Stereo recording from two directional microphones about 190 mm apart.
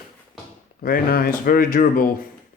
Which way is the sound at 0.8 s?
50° left (ahead or behind).